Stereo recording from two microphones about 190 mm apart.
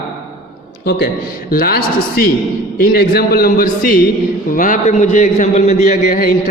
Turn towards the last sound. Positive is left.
turn(degrees=45)  # may be behind; listen again after turning